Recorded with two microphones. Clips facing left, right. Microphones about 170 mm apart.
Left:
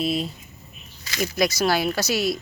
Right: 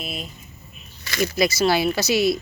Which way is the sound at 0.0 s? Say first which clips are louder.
Left 9 dB; 30° left (ahead or behind).